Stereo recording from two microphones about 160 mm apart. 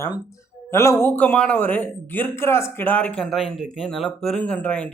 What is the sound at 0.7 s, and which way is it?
Speech, 15° left (ahead or behind).